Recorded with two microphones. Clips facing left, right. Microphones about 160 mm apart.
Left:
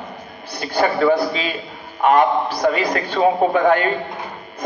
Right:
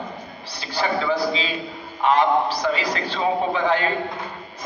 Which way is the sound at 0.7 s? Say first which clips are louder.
Left 6 dB; 50° left (ahead or behind).